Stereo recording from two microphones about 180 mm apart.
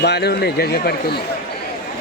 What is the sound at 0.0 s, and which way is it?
Speech, 65° left (ahead or behind).